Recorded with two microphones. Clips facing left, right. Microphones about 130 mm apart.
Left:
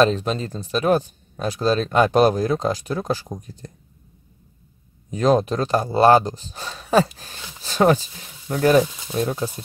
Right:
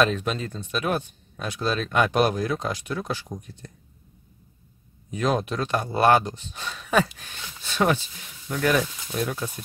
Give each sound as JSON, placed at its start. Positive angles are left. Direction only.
{"t": 0.0, "sound": "speech", "side_deg": 35}
{"t": 5.1, "sound": "speech", "side_deg": 35}